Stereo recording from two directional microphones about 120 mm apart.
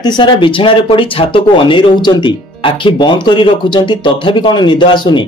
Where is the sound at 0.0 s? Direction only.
40° left (ahead or behind).